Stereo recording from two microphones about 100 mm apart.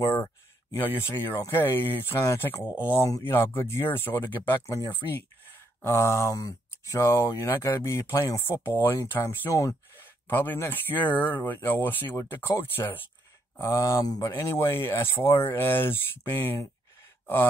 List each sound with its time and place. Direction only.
0.0 s speech: 25° left (ahead or behind)
5.8 s speech: 25° left (ahead or behind)
14.4 s speech: 25° left (ahead or behind)